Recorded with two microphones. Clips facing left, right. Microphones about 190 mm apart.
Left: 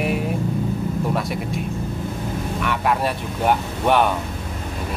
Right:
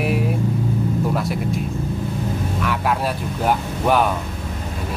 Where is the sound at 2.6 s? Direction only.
Centre (ahead or behind).